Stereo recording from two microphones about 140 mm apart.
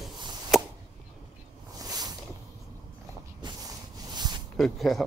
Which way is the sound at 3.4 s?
30° right (ahead or behind).